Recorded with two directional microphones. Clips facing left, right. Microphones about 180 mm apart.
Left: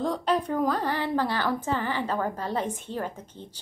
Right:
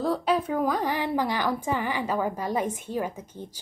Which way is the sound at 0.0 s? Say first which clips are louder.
Right 1 dB; 5° right (ahead or behind).